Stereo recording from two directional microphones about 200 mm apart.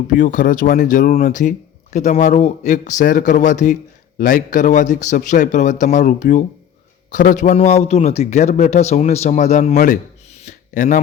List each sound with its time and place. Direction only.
0.1 s a man's voice: 40° left (ahead or behind)